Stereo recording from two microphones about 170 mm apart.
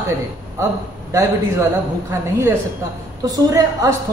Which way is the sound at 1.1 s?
15° right (ahead or behind).